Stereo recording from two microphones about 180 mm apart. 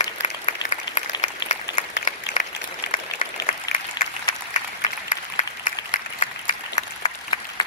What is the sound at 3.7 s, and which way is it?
Applause, 20° left (ahead or behind).